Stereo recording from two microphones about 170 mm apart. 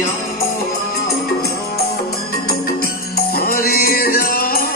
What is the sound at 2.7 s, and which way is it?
Music, 60° left (ahead or behind).